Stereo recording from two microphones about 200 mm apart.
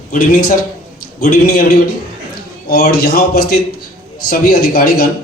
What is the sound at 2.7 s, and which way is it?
A man's voice, 50° left (ahead or behind).